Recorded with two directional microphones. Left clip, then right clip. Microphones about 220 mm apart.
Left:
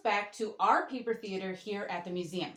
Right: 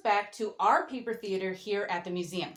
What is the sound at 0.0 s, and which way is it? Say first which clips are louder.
Speech: right 3 dB; 50° right (ahead or behind).